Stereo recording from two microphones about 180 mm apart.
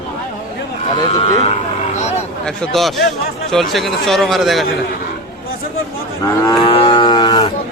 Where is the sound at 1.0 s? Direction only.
35° left (ahead or behind).